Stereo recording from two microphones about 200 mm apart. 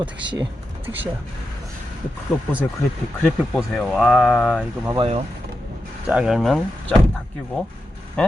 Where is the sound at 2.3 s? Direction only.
Centre (ahead or behind).